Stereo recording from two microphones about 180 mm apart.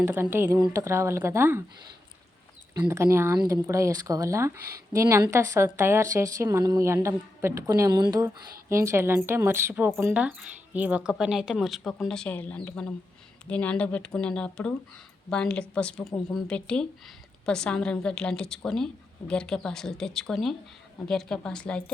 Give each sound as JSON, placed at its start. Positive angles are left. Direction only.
{"t": 0.0, "sound": "a woman's voice", "side_deg": -10}
{"t": 2.8, "sound": "a woman's voice", "side_deg": -15}